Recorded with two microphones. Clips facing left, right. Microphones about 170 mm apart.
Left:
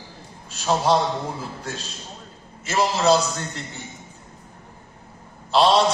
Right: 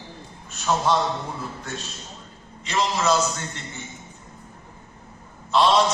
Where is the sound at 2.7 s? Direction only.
35° left (ahead or behind).